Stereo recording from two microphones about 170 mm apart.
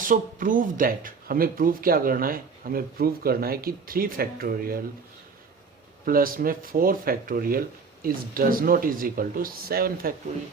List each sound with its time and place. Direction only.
0.0 s speech: 50° right (ahead or behind)
6.1 s speech: 55° right (ahead or behind)